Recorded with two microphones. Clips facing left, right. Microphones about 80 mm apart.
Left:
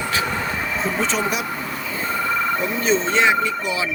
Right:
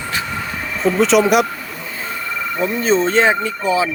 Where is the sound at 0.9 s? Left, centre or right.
Right.